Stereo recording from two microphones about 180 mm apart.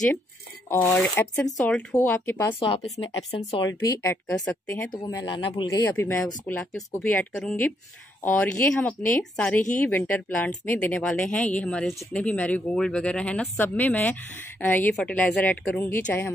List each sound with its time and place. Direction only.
0.7 s speech: 15° left (ahead or behind)
2.7 s speech: 30° left (ahead or behind)
3.8 s speech: 15° left (ahead or behind)
4.9 s speech: 20° left (ahead or behind)